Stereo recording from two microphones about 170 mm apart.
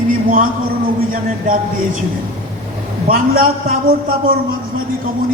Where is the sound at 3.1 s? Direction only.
60° right (ahead or behind).